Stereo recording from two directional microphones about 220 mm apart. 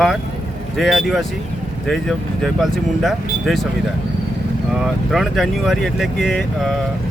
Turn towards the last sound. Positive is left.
turn(degrees=0)  # may be behind; listen again after turning